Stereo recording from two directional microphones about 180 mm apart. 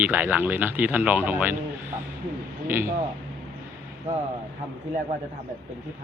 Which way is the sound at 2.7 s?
15° right (ahead or behind).